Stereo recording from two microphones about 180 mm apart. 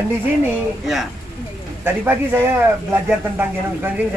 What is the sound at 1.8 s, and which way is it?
Speech, 10° right (ahead or behind).